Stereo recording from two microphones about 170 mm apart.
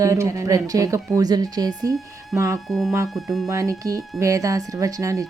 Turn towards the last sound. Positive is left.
turn(degrees=-20)  # may be behind; listen again after turning